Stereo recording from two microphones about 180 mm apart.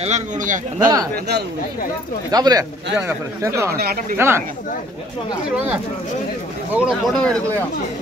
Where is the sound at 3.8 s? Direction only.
55° right (ahead or behind).